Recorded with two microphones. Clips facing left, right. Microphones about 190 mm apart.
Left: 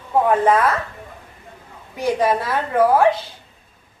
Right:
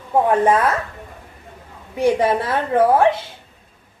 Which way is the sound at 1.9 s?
25° right (ahead or behind).